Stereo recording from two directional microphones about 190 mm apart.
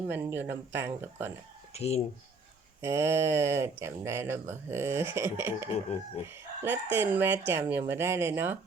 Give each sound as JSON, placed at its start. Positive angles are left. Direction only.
{"t": 0.1, "sound": "speech", "side_deg": -10}
{"t": 1.7, "sound": "speech", "side_deg": 35}
{"t": 2.8, "sound": "speech", "side_deg": -15}
{"t": 6.2, "sound": "chicken", "side_deg": -15}
{"t": 6.9, "sound": "speech", "side_deg": -10}